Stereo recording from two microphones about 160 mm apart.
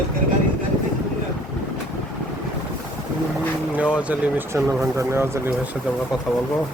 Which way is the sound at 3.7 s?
10° right (ahead or behind).